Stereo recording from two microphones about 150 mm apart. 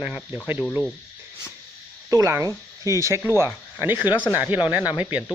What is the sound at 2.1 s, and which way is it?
Speech, 20° right (ahead or behind).